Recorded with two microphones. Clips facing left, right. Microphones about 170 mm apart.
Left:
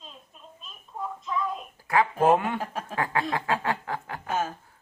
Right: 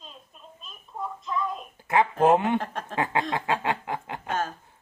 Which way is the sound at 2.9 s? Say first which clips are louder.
Right 1 dB; 20° right (ahead or behind).